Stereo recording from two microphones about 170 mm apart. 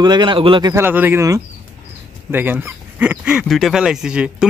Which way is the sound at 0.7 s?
10° right (ahead or behind).